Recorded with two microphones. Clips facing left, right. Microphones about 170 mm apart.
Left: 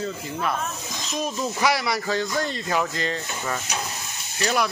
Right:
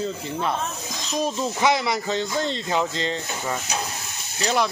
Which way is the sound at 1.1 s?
25° right (ahead or behind).